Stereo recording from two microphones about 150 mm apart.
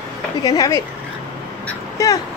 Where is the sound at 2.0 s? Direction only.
20° left (ahead or behind).